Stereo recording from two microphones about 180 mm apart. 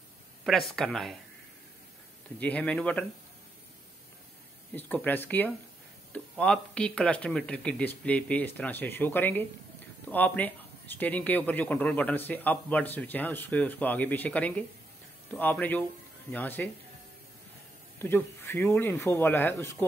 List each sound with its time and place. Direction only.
0.4 s speech: centre (ahead or behind)
2.4 s speech: 10° left (ahead or behind)
4.7 s speech: 10° left (ahead or behind)
17.9 s speech: 10° left (ahead or behind)